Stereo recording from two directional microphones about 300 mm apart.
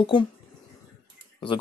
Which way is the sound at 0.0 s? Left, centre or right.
Centre.